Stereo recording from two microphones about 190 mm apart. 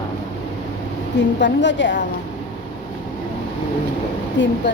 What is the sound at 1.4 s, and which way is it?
Speech, 70° left (ahead or behind).